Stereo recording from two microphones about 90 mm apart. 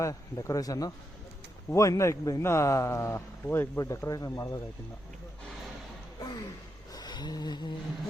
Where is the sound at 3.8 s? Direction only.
35° left (ahead or behind).